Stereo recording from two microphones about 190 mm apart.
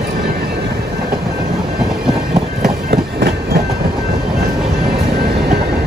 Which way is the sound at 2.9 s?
55° right (ahead or behind).